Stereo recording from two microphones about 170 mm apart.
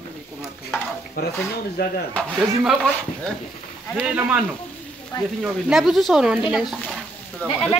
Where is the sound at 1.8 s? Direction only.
70° left (ahead or behind).